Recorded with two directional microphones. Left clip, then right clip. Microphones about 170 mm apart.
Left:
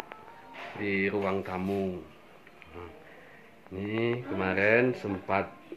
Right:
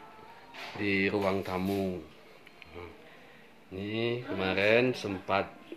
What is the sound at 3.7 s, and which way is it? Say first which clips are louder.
Speech: left 2 dB; centre (ahead or behind).